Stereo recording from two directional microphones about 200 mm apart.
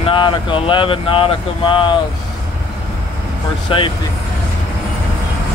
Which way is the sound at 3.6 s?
25° left (ahead or behind).